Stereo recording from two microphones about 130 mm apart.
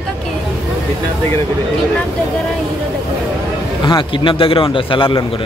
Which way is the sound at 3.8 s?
40° left (ahead or behind).